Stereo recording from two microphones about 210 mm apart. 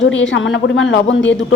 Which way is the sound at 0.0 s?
60° left (ahead or behind).